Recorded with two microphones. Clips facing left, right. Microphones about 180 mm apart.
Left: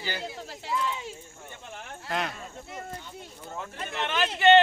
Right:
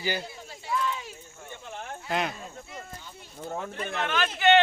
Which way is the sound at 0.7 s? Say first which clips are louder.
Right 1 dB; 20° left (ahead or behind).